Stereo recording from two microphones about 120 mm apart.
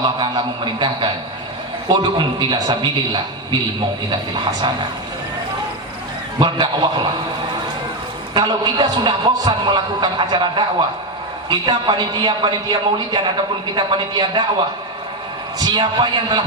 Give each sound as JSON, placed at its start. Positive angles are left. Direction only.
{"t": 0.2, "sound": "a man's voice", "side_deg": -40}
{"t": 6.4, "sound": "a man's voice", "side_deg": -40}
{"t": 8.3, "sound": "a man's voice", "side_deg": -40}
{"t": 15.5, "sound": "a man's voice", "side_deg": -35}